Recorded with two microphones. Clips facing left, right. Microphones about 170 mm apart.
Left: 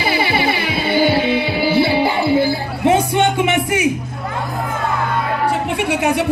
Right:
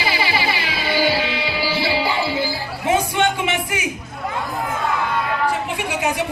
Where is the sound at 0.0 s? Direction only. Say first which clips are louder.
Left 4 dB; 55° left (ahead or behind).